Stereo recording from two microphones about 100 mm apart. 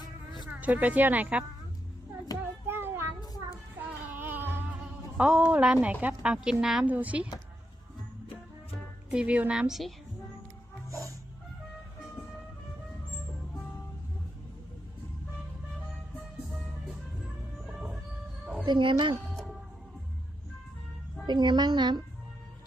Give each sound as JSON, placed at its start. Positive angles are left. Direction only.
{"t": 0.4, "sound": "speech", "side_deg": -15}
{"t": 2.6, "sound": "child singing", "side_deg": -20}
{"t": 3.8, "sound": "a sound", "side_deg": -20}
{"t": 5.1, "sound": "a woman's voice", "side_deg": -5}
{"t": 9.0, "sound": "a woman's voice", "side_deg": -10}
{"t": 17.7, "sound": "train", "side_deg": -10}
{"t": 18.6, "sound": "a child's voice", "side_deg": -50}
{"t": 19.3, "sound": "music", "side_deg": 0}
{"t": 21.2, "sound": "a child's voice", "side_deg": -45}